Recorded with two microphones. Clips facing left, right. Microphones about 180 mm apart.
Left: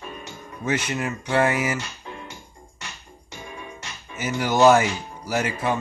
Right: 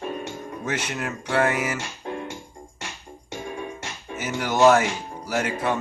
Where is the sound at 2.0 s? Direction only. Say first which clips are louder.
Right 7 dB; 55° right (ahead or behind).